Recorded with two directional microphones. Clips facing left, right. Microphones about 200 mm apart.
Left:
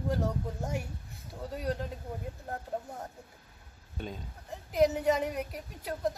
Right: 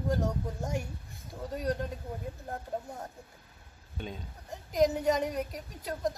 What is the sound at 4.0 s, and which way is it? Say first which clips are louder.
Speech: even; centre (ahead or behind).